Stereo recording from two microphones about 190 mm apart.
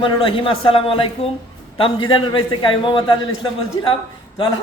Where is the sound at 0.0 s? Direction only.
25° left (ahead or behind).